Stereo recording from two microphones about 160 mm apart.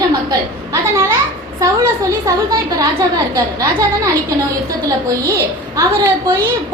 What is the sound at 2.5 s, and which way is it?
A woman's voice, 20° right (ahead or behind).